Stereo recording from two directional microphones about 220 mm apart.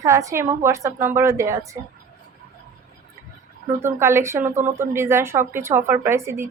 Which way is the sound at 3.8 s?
10° right (ahead or behind).